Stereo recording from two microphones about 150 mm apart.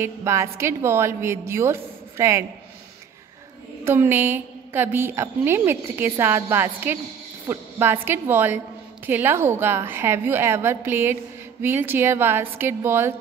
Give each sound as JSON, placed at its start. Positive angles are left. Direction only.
{"t": 0.0, "sound": "a woman's voice", "side_deg": -20}
{"t": 3.8, "sound": "a woman's voice", "side_deg": -15}